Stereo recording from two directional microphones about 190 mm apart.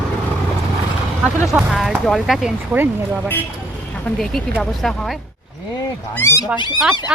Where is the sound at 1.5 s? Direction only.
Centre (ahead or behind).